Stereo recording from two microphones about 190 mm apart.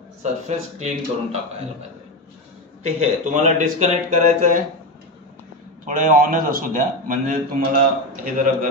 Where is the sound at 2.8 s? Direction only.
35° right (ahead or behind).